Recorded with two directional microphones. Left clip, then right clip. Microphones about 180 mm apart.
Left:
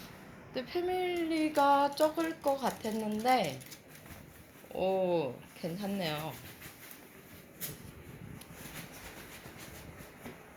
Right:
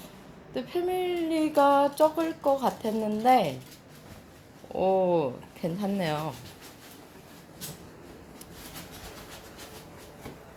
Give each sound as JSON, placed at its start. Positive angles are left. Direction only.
{"t": 0.5, "sound": "speech", "side_deg": -30}
{"t": 4.7, "sound": "speech", "side_deg": -30}